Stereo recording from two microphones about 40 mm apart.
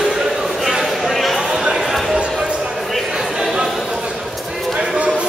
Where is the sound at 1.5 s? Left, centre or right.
Centre.